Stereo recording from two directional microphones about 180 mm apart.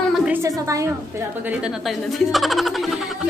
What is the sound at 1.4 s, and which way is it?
Speech, 5° right (ahead or behind).